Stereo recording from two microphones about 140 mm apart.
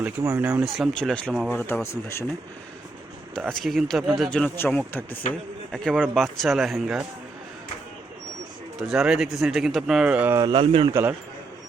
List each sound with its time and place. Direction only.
0.0 s speech: 15° right (ahead or behind)
0.6 s speech: centre (ahead or behind); by 2.2 s 20° left (ahead or behind)
3.5 s speech: centre (ahead or behind)
5.7 s speech: centre (ahead or behind)
8.9 s speech: 5° right (ahead or behind)
10.5 s speech: 40° right (ahead or behind)